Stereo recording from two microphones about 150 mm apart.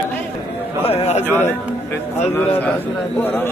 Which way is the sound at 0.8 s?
45° left (ahead or behind).